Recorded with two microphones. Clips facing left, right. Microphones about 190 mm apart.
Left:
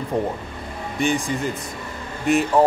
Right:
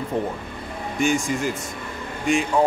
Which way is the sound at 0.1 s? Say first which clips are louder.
Left 2 dB; centre (ahead or behind).